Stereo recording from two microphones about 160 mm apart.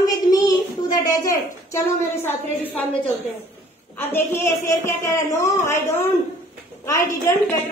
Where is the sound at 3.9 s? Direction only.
15° left (ahead or behind).